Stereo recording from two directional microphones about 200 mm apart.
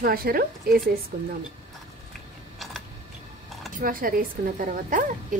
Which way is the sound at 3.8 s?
45° right (ahead or behind).